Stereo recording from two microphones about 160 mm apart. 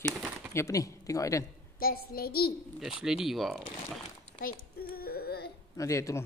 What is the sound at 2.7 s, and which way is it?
Speech, 5° right (ahead or behind).